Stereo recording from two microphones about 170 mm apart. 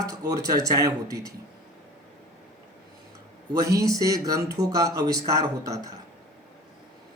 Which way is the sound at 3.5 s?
20° right (ahead or behind).